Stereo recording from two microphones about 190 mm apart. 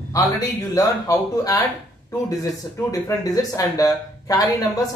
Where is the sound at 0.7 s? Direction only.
20° left (ahead or behind).